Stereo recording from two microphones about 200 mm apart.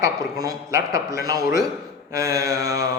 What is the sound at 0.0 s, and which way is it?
A man's voice, 15° right (ahead or behind).